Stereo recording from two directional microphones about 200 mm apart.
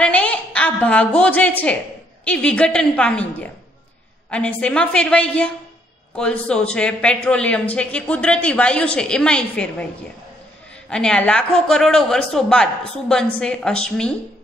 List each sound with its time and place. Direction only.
0.0 s a woman's voice: 5° left (ahead or behind)
10.9 s a woman's voice: 5° left (ahead or behind)